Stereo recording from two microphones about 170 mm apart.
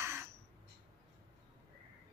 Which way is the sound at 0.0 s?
15° right (ahead or behind).